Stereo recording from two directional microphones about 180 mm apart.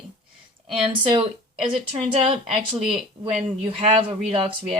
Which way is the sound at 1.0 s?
30° right (ahead or behind).